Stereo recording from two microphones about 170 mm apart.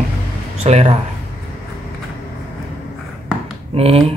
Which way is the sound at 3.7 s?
35° right (ahead or behind).